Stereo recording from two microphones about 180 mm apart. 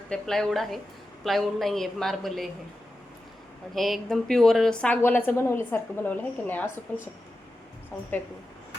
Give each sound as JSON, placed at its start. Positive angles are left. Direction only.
{"t": 0.1, "sound": "a woman's voice", "side_deg": 5}
{"t": 3.8, "sound": "a woman's voice", "side_deg": 0}